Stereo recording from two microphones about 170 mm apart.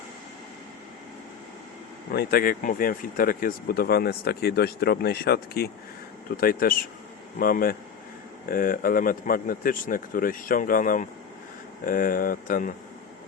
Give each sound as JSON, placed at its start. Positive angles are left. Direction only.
{"t": 2.1, "sound": "speech", "side_deg": 60}